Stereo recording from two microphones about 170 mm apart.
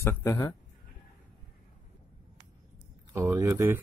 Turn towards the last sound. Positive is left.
turn(degrees=-15)  # may be behind; listen again after turning